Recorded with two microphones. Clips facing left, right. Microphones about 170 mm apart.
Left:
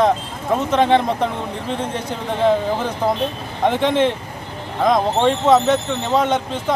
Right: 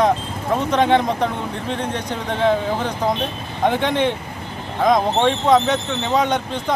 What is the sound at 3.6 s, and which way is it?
Speech, centre (ahead or behind).